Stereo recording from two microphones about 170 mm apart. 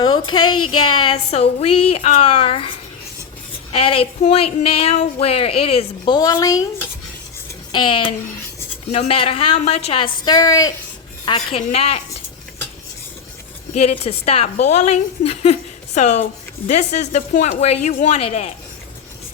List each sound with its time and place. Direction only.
0.0 s speech: 25° left (ahead or behind)
7.7 s speech: 30° left (ahead or behind)
11.3 s speech: 35° left (ahead or behind)
14.0 s speech: 35° left (ahead or behind)